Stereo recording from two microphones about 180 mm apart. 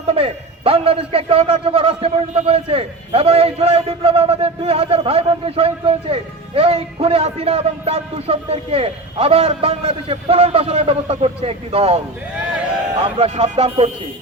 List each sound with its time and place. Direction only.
0.1 s a man's voice: 30° right (ahead or behind)
13.1 s a man's voice: 35° right (ahead or behind)